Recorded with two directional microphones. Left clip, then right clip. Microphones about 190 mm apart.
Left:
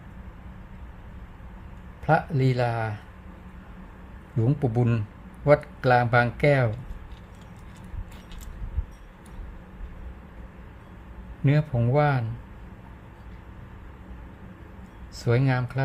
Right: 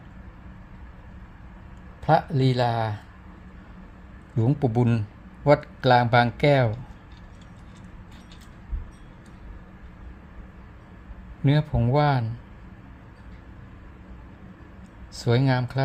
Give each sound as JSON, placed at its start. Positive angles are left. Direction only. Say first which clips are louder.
{"t": 2.0, "sound": "speech", "louder": "right 2 dB", "side_deg": -15}
{"t": 4.4, "sound": "speech", "louder": "right 2 dB", "side_deg": -15}
{"t": 11.4, "sound": "speech", "louder": "right 1 dB", "side_deg": -15}
{"t": 15.1, "sound": "speech", "louder": "right 2 dB", "side_deg": -15}